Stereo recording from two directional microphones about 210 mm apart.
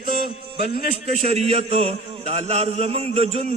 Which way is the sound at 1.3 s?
30° right (ahead or behind).